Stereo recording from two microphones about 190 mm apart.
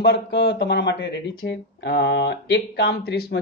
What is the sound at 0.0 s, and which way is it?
Speech, 60° left (ahead or behind).